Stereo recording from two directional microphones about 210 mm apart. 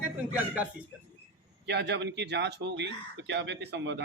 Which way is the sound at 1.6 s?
55° right (ahead or behind).